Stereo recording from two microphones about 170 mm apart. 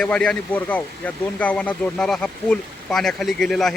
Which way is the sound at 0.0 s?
5° left (ahead or behind).